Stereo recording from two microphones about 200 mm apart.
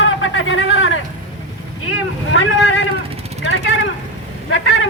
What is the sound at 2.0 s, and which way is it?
A woman's voice, 75° left (ahead or behind).